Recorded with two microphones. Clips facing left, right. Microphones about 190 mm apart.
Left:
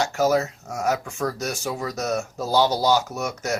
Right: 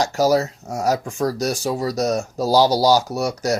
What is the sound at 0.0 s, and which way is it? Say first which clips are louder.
Speech: right 3 dB; 35° right (ahead or behind).